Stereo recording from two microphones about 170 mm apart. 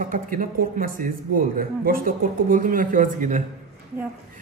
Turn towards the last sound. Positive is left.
turn(degrees=-50)  # may be behind; listen again after turning